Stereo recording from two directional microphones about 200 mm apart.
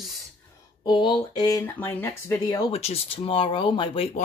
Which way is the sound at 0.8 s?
25° left (ahead or behind).